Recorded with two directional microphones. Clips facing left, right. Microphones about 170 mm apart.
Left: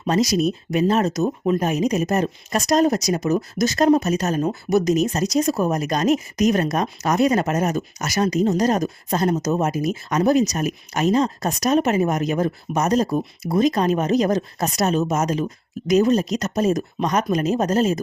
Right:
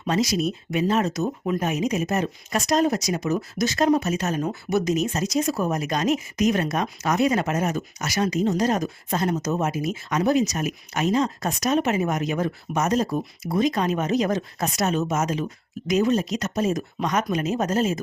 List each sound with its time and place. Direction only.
0.0 s speech: 40° left (ahead or behind)